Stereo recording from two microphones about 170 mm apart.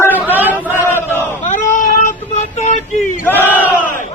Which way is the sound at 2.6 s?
45° left (ahead or behind).